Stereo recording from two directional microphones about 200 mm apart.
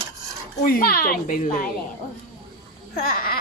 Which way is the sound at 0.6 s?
45° left (ahead or behind).